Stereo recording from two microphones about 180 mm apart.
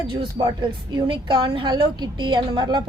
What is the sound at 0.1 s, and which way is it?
A woman's voice, 25° right (ahead or behind).